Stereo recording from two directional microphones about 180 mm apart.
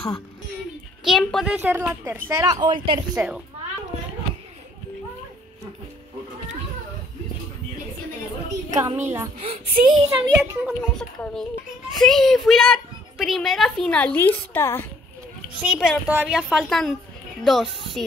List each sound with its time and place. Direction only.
1.0 s a woman's voice: centre (ahead or behind); by 3.0 s 25° right (ahead or behind)
3.2 s a woman's voice: 10° right (ahead or behind)
8.6 s speech: 20° right (ahead or behind)
9.4 s a child's voice: 35° right (ahead or behind)
10.0 s a woman's voice: 15° right (ahead or behind)
10.8 s a child's voice: 5° left (ahead or behind)
15.7 s a child's voice: 5° right (ahead or behind)